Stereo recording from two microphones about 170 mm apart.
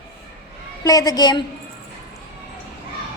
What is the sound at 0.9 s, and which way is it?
Speech, 20° left (ahead or behind).